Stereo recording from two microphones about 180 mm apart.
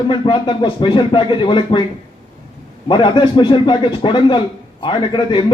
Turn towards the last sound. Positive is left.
turn(degrees=25)  # may be behind; listen again after turning